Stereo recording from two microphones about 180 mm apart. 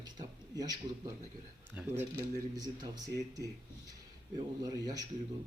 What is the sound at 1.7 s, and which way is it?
A man's voice, 15° right (ahead or behind).